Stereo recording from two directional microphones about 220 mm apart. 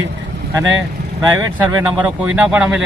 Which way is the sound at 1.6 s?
5° right (ahead or behind).